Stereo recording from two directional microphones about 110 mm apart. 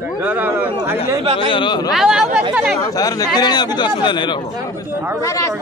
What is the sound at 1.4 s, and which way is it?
Speech, 50° left (ahead or behind).